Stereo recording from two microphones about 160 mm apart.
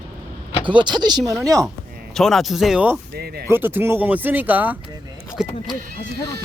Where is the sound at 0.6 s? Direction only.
30° right (ahead or behind).